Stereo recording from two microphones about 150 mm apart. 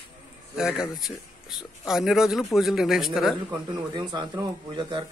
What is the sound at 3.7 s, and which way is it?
Speech, 30° right (ahead or behind).